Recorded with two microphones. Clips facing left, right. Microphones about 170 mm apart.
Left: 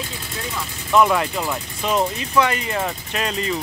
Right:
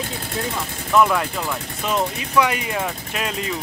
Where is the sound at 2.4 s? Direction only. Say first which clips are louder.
Even; 10° right (ahead or behind).